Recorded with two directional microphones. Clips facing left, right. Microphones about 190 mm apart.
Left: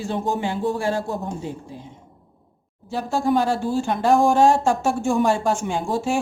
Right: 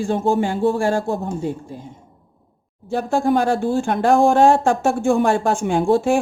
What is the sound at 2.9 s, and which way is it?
A woman's voice, 55° right (ahead or behind).